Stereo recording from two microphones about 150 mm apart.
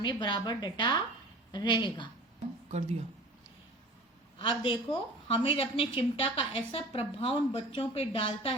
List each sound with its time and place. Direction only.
0.0 s a woman's voice: 30° left (ahead or behind)
2.6 s speech: 45° right (ahead or behind)
4.4 s a woman's voice: 35° left (ahead or behind)